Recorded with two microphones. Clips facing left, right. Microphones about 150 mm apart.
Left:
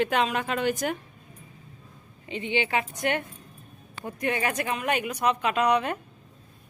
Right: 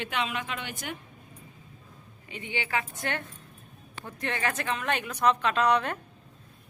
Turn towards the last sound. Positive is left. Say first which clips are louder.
# left 1 dB
turn(degrees=10)  # may be behind; listen again after turning